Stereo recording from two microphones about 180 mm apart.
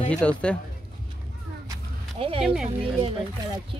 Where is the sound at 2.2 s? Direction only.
30° right (ahead or behind).